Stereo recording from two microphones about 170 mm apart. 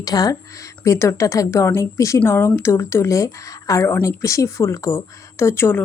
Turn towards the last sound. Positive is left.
turn(degrees=15)  # may be behind; listen again after turning